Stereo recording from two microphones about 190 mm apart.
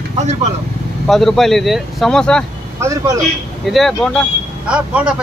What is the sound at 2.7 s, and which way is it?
Speech, 15° right (ahead or behind).